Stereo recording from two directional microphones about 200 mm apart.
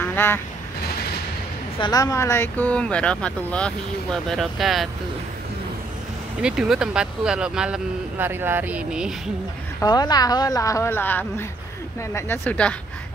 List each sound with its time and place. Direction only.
0.0 s duck: 10° left (ahead or behind)
1.8 s speech: 20° left (ahead or behind); by 4.8 s centre (ahead or behind)
6.4 s speech: 5° right (ahead or behind)
9.8 s a woman's voice: 20° left (ahead or behind)